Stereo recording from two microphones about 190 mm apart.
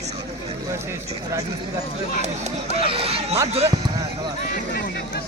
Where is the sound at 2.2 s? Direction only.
35° right (ahead or behind).